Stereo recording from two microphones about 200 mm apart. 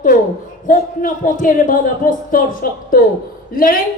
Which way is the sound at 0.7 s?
40° left (ahead or behind).